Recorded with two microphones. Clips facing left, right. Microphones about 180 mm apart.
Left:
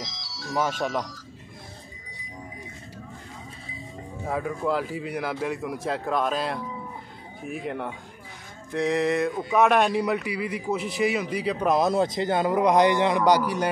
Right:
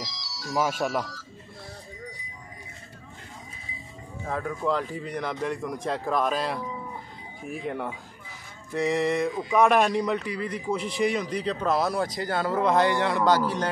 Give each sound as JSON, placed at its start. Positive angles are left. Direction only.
{"t": 0.0, "sound": "music", "side_deg": 55}
{"t": 0.6, "sound": "speech", "side_deg": -5}
{"t": 4.3, "sound": "speech", "side_deg": 5}